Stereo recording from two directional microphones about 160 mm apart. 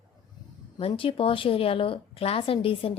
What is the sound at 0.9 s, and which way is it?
A woman's voice, 35° left (ahead or behind).